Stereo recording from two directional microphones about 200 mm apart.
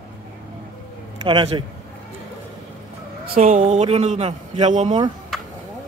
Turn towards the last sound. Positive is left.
turn(degrees=0)  # may be behind; listen again after turning